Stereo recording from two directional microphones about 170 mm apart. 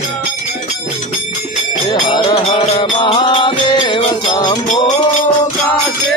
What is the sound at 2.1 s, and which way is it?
Music, 30° left (ahead or behind).